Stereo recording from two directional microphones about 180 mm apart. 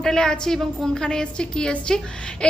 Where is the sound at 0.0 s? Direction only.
5° left (ahead or behind).